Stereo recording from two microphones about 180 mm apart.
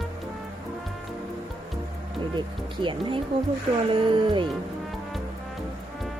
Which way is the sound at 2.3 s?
25° right (ahead or behind).